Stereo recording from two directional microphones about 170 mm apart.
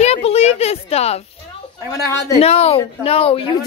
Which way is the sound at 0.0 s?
40° left (ahead or behind).